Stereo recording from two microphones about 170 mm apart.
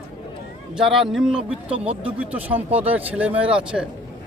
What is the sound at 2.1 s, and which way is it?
Speech, 10° right (ahead or behind).